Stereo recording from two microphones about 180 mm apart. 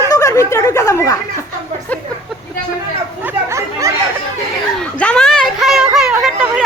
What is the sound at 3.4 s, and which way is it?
Chatter, 15° right (ahead or behind).